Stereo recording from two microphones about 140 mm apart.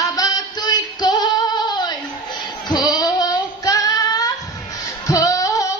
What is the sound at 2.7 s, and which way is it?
Child singing, 30° left (ahead or behind).